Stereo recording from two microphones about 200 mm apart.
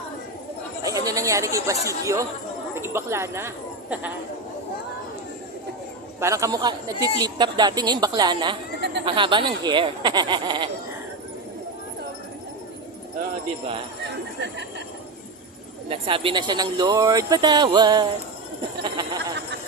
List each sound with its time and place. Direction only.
0.9 s speech: 15° right (ahead or behind)
6.1 s a man's voice: 15° right (ahead or behind)
15.9 s speech: 25° right (ahead or behind)
19.0 s a sound: 20° right (ahead or behind)